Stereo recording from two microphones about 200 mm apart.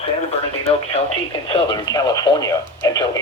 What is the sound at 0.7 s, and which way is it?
Speech, 30° left (ahead or behind).